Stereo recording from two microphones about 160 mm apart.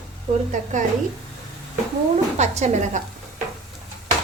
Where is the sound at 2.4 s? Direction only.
45° right (ahead or behind).